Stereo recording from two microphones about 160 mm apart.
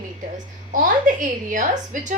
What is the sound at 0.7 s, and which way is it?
A woman's voice, 55° right (ahead or behind).